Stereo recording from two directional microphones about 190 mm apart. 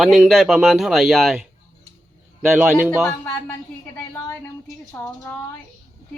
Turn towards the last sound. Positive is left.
turn(degrees=15)  # may be behind; listen again after turning